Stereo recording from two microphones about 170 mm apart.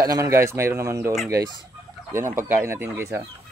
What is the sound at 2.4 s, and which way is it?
Speech, 15° right (ahead or behind).